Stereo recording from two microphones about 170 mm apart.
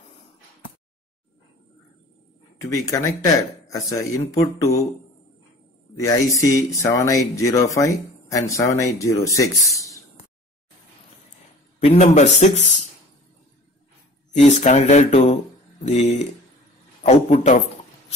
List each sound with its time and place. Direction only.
2.7 s speech: 20° left (ahead or behind)
5.9 s speech: 20° left (ahead or behind)
11.8 s speech: 40° left (ahead or behind)
14.3 s speech: 45° left (ahead or behind)
17.0 s speech: 40° left (ahead or behind)